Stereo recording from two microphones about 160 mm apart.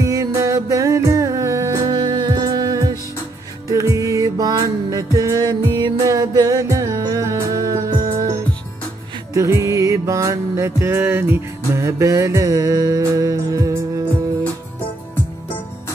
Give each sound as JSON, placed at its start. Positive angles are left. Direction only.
{"t": 0.0, "sound": "music", "side_deg": -20}